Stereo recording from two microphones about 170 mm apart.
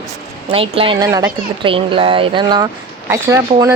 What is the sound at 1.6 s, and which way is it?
Speech, 30° right (ahead or behind).